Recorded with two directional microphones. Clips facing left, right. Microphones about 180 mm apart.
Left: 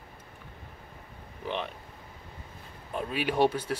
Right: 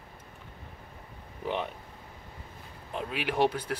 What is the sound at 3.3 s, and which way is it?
Speech, 10° left (ahead or behind).